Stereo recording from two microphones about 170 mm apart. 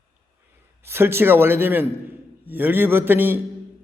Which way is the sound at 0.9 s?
15° right (ahead or behind).